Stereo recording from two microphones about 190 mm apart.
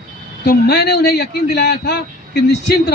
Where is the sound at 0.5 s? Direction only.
60° left (ahead or behind).